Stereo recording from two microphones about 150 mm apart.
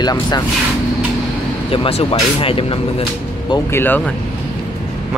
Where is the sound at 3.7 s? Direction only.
15° left (ahead or behind).